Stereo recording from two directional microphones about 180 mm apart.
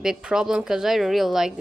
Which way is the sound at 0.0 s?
5° right (ahead or behind).